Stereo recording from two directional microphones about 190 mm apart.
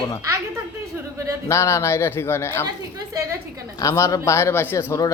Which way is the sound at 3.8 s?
15° left (ahead or behind).